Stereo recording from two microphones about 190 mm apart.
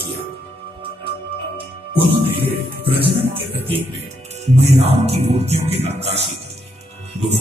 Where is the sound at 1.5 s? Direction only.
25° right (ahead or behind).